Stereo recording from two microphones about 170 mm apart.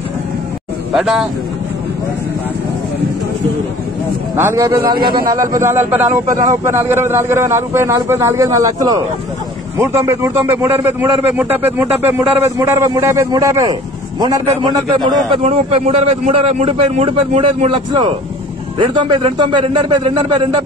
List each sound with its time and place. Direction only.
0.9 s speech: centre (ahead or behind)
4.4 s a man's voice: 15° right (ahead or behind)
15.3 s a man's voice: 35° right (ahead or behind)